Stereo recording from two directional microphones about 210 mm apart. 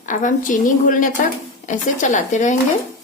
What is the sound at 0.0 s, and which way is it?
A woman's voice, 35° left (ahead or behind).